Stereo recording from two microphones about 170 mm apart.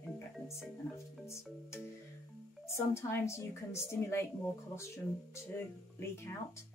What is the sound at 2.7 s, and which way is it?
Speech, 15° left (ahead or behind).